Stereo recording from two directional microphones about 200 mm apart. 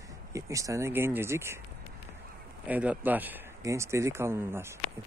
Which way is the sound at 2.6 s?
5° right (ahead or behind).